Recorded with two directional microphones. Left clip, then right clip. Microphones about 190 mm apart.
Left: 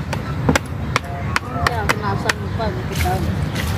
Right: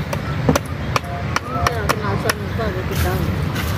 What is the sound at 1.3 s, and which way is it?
Chop, 15° left (ahead or behind).